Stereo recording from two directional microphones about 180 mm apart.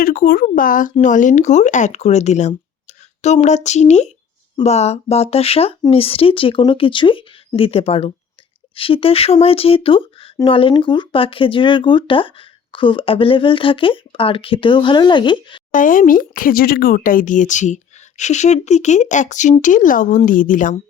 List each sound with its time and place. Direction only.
0.0 s speech: 55° left (ahead or behind); by 15.6 s 25° left (ahead or behind)
15.7 s speech: 50° left (ahead or behind)